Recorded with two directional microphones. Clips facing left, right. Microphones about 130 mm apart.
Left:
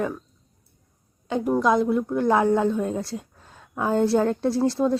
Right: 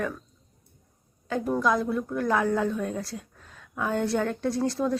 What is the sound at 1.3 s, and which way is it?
A woman's voice, 20° left (ahead or behind).